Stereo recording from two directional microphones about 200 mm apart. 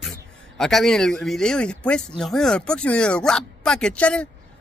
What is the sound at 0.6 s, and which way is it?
Speech, centre (ahead or behind).